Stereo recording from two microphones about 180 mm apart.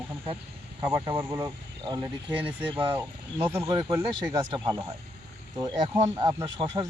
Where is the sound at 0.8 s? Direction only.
20° right (ahead or behind).